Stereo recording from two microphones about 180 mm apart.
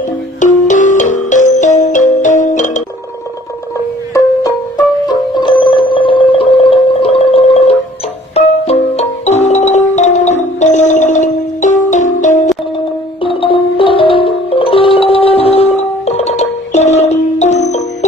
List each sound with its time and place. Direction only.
0.4 s music: 45° left (ahead or behind)
4.1 s music: 20° left (ahead or behind); by 12.4 s 45° left (ahead or behind)
13.2 s music: 30° left (ahead or behind)